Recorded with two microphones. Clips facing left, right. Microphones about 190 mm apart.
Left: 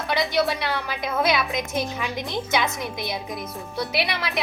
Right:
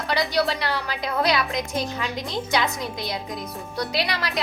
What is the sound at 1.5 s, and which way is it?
A woman's voice, 20° left (ahead or behind).